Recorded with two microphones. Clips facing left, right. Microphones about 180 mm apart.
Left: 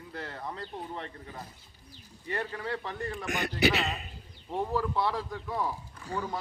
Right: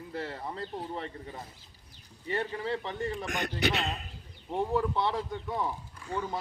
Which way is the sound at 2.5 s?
25° right (ahead or behind).